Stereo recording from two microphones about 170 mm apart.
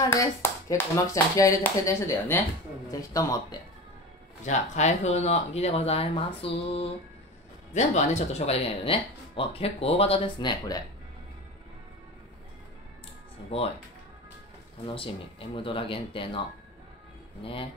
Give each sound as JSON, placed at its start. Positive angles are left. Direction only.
{"t": 0.0, "sound": "speech", "side_deg": 20}
{"t": 4.5, "sound": "speech", "side_deg": 45}
{"t": 13.5, "sound": "speech", "side_deg": 35}
{"t": 15.0, "sound": "speech", "side_deg": 30}
{"t": 17.4, "sound": "speech", "side_deg": 30}